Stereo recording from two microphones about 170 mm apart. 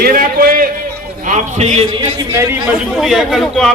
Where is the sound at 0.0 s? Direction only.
60° right (ahead or behind).